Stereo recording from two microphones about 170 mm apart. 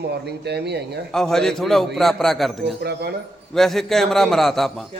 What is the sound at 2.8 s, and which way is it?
Speech, 70° right (ahead or behind).